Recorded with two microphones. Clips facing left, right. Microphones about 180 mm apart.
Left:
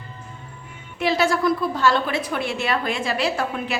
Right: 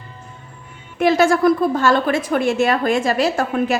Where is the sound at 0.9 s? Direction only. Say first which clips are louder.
Right 6 dB; 50° right (ahead or behind).